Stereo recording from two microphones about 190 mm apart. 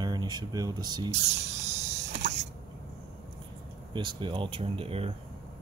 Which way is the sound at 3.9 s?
25° right (ahead or behind).